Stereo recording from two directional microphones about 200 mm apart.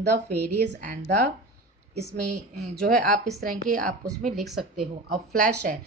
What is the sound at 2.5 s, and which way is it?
Speech, 35° right (ahead or behind).